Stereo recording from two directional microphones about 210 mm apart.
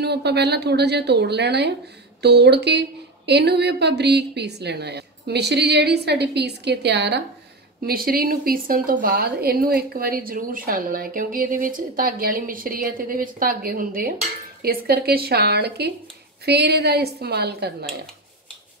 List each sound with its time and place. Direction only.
0.0 s a woman's voice: 50° right (ahead or behind)